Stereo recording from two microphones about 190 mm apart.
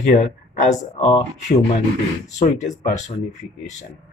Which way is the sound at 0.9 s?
35° left (ahead or behind).